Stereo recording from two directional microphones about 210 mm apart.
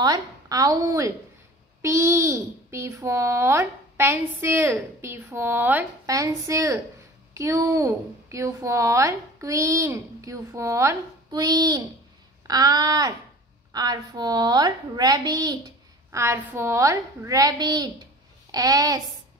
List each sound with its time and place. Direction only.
0.0 s a child's voice: 20° right (ahead or behind)